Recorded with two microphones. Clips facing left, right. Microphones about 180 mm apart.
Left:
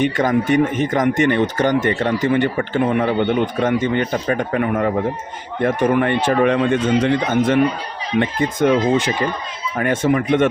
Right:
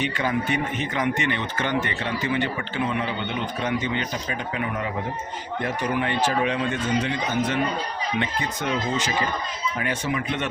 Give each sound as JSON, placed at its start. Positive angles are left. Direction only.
{"t": 0.0, "sound": "speech", "side_deg": 45}